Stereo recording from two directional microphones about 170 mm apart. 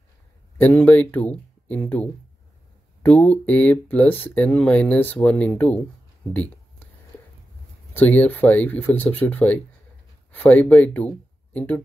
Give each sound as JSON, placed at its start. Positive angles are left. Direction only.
{"t": 0.6, "sound": "speech", "side_deg": 10}
{"t": 6.3, "sound": "a sound", "side_deg": 10}
{"t": 7.9, "sound": "speech", "side_deg": 10}